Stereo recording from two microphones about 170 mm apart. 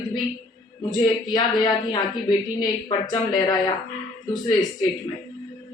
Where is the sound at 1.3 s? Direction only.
25° left (ahead or behind).